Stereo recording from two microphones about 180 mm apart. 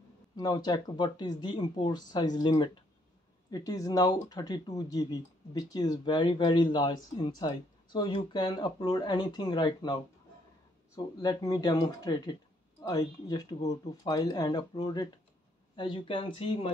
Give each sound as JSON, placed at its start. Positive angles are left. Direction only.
{"t": 0.4, "sound": "speech", "side_deg": 20}
{"t": 11.0, "sound": "speech", "side_deg": 20}